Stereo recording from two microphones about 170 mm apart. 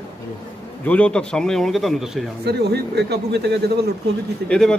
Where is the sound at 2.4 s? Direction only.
75° right (ahead or behind).